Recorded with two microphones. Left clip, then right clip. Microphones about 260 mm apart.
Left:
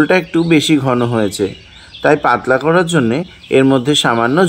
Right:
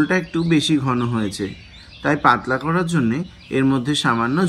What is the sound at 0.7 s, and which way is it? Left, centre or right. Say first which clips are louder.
Speech: left 7 dB; centre.